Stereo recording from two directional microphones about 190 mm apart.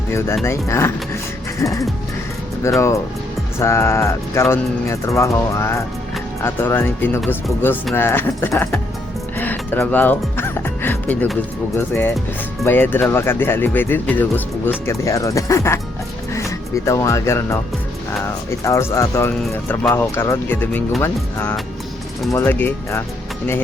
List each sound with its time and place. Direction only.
0.1 s speech: 15° left (ahead or behind)
9.4 s music: 10° left (ahead or behind)
12.6 s speech: 10° left (ahead or behind)
18.6 s speech: 15° left (ahead or behind)